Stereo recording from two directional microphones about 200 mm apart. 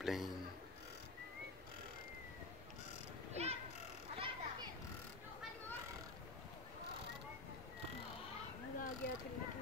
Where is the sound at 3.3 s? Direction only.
30° right (ahead or behind).